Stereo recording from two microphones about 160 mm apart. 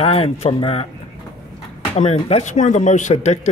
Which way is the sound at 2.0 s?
45° left (ahead or behind).